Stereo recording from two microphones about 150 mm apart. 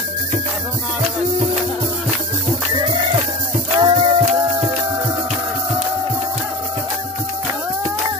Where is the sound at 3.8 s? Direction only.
35° right (ahead or behind).